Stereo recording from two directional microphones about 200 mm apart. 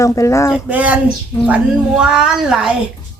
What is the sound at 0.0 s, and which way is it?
Speech, 15° left (ahead or behind).